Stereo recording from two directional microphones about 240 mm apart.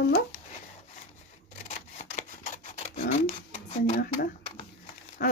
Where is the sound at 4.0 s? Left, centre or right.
Left.